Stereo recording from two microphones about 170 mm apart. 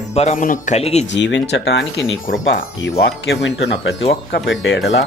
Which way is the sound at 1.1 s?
90° left.